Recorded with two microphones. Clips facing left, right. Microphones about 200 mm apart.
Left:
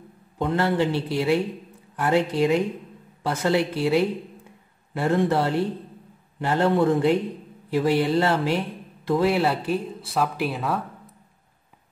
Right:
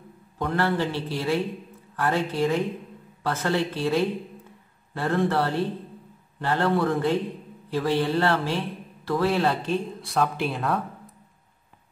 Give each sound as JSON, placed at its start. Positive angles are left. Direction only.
{"t": 0.4, "sound": "a man's voice", "side_deg": 20}